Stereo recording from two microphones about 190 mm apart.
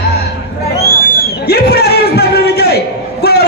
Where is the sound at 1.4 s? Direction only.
55° left (ahead or behind).